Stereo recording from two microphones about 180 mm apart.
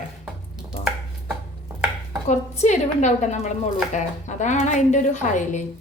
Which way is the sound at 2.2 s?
40° left (ahead or behind).